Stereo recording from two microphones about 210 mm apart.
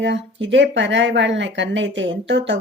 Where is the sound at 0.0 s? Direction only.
60° right (ahead or behind).